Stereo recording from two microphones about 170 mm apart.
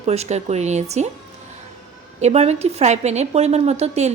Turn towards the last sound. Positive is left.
turn(degrees=-40)  # may be behind; listen again after turning